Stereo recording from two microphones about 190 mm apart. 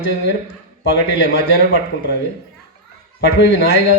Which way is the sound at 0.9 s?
55° left (ahead or behind).